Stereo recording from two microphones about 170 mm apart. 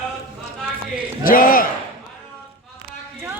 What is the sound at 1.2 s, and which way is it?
Battle cry, 55° left (ahead or behind).